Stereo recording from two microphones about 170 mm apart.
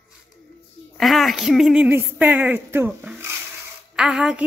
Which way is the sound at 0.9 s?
Centre (ahead or behind).